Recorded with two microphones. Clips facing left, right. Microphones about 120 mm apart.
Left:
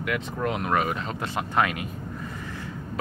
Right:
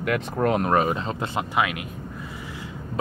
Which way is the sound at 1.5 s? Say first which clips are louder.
Left 1 dB; 5° right (ahead or behind).